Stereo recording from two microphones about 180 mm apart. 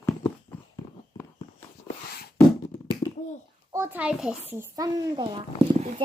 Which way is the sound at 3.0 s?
20° left (ahead or behind).